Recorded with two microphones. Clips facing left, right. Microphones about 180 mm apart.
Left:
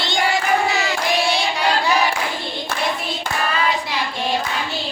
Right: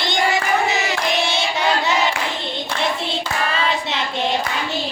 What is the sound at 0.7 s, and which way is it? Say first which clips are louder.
Crowd: even; 20° right (ahead or behind).